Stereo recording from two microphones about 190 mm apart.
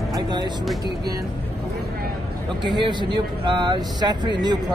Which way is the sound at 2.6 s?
25° right (ahead or behind).